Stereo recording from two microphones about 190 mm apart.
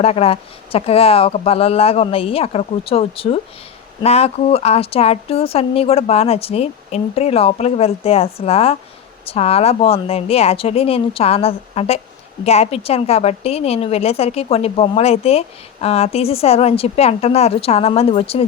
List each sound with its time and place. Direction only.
0.0 s a woman's voice: 30° left (ahead or behind)